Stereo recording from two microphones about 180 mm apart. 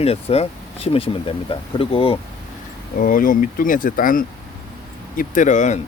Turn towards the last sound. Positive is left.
turn(degrees=45)  # may be behind; listen again after turning